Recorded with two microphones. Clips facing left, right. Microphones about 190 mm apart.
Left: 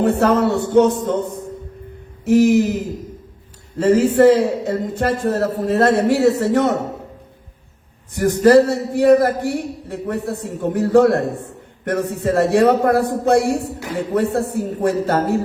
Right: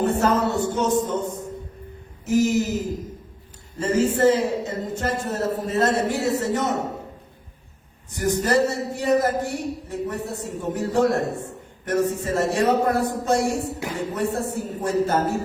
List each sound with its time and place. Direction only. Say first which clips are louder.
0.0 s a man's voice: left 5 dB; 60° left (ahead or behind)
3.8 s a man's voice: left 7 dB; 60° left (ahead or behind)
8.4 s a man's voice: left 11 dB; 60° left (ahead or behind)